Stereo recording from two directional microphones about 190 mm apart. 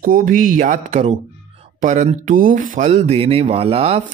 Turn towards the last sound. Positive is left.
turn(degrees=-30)  # may be behind; listen again after turning